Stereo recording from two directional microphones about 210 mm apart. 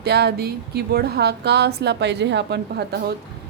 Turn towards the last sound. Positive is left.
turn(degrees=-50)  # may be behind; listen again after turning